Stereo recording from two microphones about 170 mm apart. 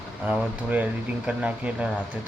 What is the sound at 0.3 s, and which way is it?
Speech, 10° right (ahead or behind).